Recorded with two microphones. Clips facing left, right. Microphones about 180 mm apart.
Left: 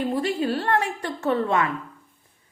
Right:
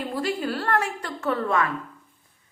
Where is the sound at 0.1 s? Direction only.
20° left (ahead or behind).